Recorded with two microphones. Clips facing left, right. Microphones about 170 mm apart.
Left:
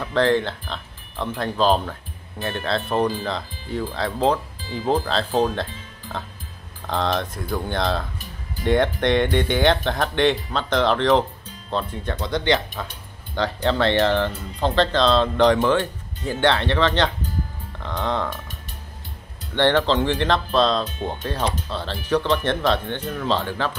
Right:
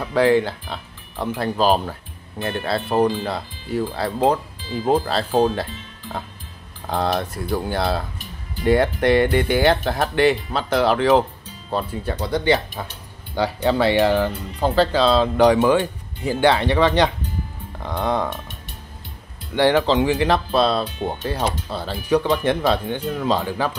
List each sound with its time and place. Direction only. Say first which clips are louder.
0.0 s speech: right 3 dB; 10° right (ahead or behind)
6.9 s speech: right 1 dB; 10° right (ahead or behind)
19.5 s speech: right 2 dB; 10° right (ahead or behind)